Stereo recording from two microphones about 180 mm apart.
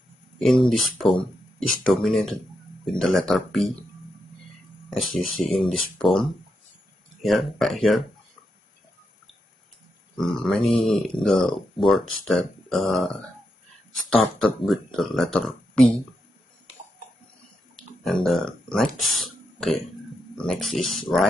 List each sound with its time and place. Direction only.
0.4 s speech: centre (ahead or behind)
4.8 s speech: centre (ahead or behind)
10.1 s speech: centre (ahead or behind)
18.0 s speech: centre (ahead or behind)